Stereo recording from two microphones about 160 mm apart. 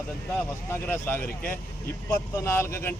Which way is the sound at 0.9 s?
15° left (ahead or behind).